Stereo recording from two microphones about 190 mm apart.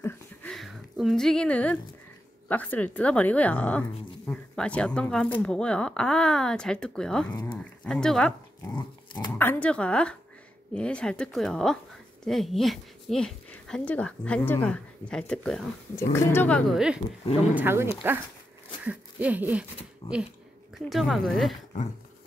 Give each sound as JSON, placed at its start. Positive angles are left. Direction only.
{"t": 0.0, "sound": "a sound", "side_deg": 5}
{"t": 2.4, "sound": "a woman's voice", "side_deg": 10}
{"t": 8.7, "sound": "dog", "side_deg": 25}
{"t": 9.4, "sound": "speech", "side_deg": 10}
{"t": 18.9, "sound": "a sound", "side_deg": -10}
{"t": 20.0, "sound": "a woman's voice", "side_deg": 15}
{"t": 20.7, "sound": "speech", "side_deg": 0}